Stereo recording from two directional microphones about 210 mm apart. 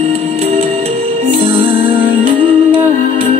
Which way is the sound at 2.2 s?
25° right (ahead or behind).